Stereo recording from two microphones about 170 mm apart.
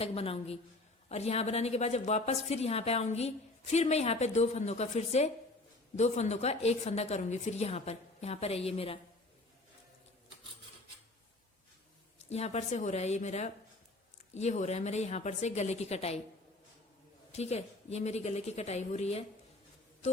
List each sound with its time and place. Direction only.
0.0 s a woman's voice: 35° left (ahead or behind)
12.3 s a woman's voice: 40° left (ahead or behind)
17.3 s a woman's voice: 40° left (ahead or behind)